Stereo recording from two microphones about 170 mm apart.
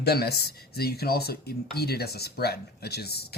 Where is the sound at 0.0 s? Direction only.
70° left (ahead or behind).